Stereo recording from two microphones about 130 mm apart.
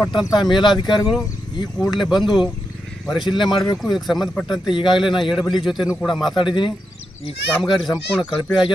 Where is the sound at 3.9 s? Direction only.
Centre (ahead or behind).